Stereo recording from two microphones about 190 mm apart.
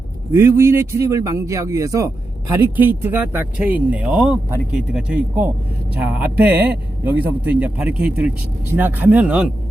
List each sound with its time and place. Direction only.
0.3 s speech: 15° right (ahead or behind)